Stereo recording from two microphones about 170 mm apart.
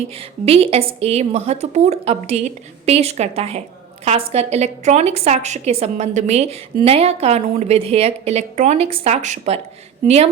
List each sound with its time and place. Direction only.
0.2 s a woman's voice: 35° right (ahead or behind)